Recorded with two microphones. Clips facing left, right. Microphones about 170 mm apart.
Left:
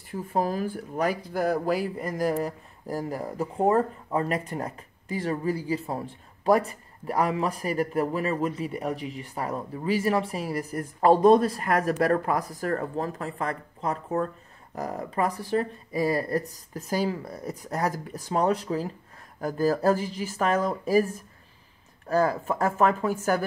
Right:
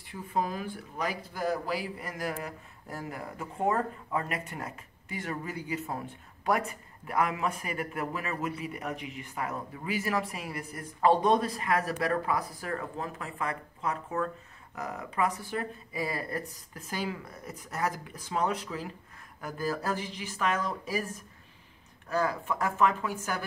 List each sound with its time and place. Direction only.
0.1 s speech: 40° left (ahead or behind)
1.0 s speech: 55° left (ahead or behind)